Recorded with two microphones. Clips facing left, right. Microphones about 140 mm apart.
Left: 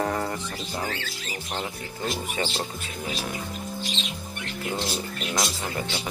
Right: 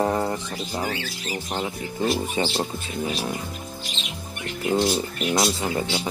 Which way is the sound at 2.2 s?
25° right (ahead or behind).